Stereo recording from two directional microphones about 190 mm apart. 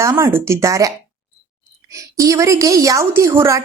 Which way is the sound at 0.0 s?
15° right (ahead or behind).